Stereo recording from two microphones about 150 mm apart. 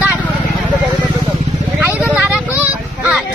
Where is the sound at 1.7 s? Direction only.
10° right (ahead or behind).